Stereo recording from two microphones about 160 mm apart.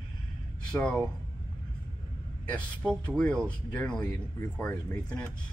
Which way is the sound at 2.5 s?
10° left (ahead or behind).